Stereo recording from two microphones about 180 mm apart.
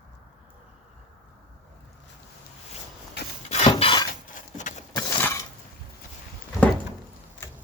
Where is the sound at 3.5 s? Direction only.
40° left (ahead or behind).